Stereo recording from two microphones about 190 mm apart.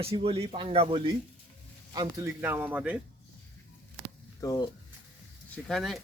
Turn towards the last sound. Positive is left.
turn(degrees=0)  # may be behind; listen again after turning